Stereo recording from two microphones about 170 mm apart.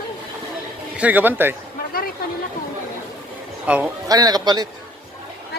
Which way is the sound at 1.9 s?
60° left (ahead or behind).